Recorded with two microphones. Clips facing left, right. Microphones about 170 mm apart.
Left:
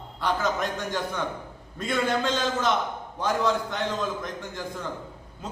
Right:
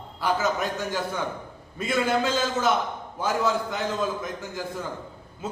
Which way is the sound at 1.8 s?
5° right (ahead or behind).